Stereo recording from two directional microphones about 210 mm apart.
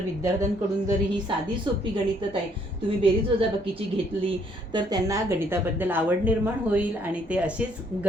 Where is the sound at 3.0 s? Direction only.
25° right (ahead or behind).